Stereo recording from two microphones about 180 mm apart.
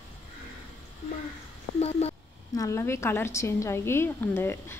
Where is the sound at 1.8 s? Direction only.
35° left (ahead or behind).